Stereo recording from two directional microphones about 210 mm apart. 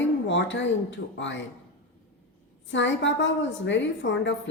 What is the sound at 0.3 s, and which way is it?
A woman's voice, 60° left (ahead or behind).